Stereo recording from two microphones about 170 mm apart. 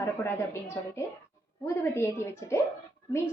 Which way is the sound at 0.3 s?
15° left (ahead or behind).